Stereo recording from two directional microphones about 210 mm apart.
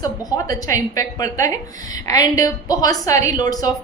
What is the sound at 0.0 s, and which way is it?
A woman's voice, 15° left (ahead or behind).